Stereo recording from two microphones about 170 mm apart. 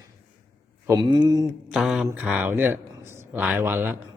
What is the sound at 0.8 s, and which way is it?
Speech, 25° right (ahead or behind).